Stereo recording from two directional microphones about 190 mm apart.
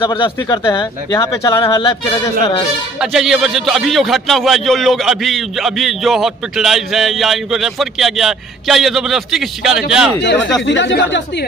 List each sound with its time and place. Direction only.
0.0 s speech: 25° left (ahead or behind)
1.8 s speech: 25° left (ahead or behind)
3.0 s a man's voice: centre (ahead or behind)
10.2 s speech: 70° left (ahead or behind)